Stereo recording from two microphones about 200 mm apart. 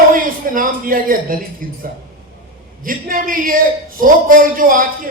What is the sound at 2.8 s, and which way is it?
A man's voice, 45° right (ahead or behind).